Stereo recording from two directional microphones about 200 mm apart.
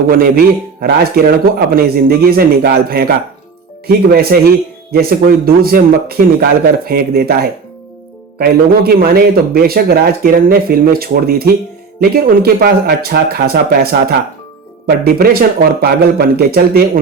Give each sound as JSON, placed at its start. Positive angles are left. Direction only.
{"t": 0.1, "sound": "speech", "side_deg": -50}